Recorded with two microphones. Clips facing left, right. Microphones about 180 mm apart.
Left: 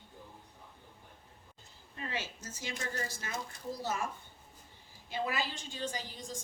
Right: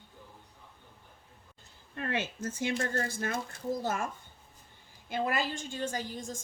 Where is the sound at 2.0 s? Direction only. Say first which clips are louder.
Right 7 dB; 55° right (ahead or behind).